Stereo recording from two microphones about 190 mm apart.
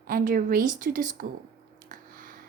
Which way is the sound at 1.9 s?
45° right (ahead or behind).